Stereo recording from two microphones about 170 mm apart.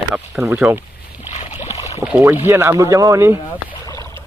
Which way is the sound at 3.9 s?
15° left (ahead or behind).